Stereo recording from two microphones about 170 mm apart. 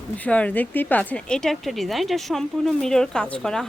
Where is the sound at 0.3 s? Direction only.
10° left (ahead or behind).